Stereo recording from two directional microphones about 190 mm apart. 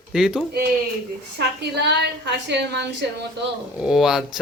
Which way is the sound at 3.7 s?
5° right (ahead or behind).